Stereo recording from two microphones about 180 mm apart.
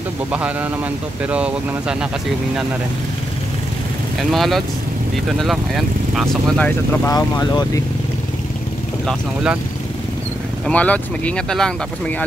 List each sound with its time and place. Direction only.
0.3 s speech: 10° right (ahead or behind)
4.2 s speech: centre (ahead or behind)
7.1 s speech: 20° left (ahead or behind)
9.0 s speech: 5° right (ahead or behind)
10.7 s speech: 10° left (ahead or behind)